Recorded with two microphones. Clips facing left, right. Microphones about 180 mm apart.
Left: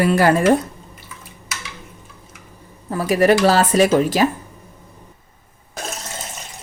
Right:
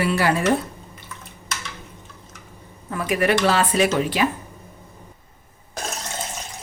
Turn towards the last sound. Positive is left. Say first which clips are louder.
# even
turn(degrees=0)  # may be behind; listen again after turning